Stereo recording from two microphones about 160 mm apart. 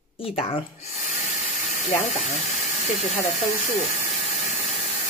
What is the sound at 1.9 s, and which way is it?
Speech, 40° left (ahead or behind).